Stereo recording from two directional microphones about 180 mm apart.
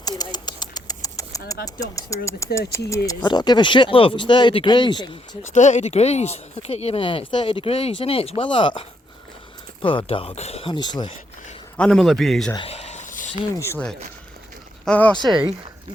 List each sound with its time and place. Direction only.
0.0 s a sound: 20° left (ahead or behind)
1.6 s speech: 20° left (ahead or behind)
5.5 s speech: 40° left (ahead or behind); by 11.2 s 25° left (ahead or behind)
11.8 s a man's voice: centre (ahead or behind)
12.5 s a sound: 35° left (ahead or behind)
13.5 s speech: 15° left (ahead or behind)
14.8 s speech: 5° left (ahead or behind)
15.2 s speech: 25° right (ahead or behind)